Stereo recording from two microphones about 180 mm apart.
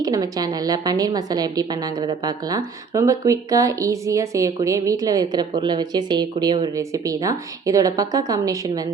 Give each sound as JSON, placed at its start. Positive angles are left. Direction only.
{"t": 0.0, "sound": "a woman's voice", "side_deg": -20}